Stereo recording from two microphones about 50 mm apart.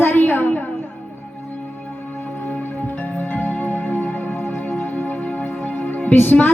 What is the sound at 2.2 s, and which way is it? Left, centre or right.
Music, left.